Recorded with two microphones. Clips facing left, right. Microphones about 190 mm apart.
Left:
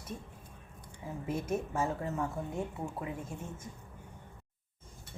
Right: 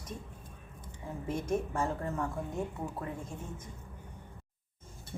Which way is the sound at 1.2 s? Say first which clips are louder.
Right 1 dB; 5° left (ahead or behind).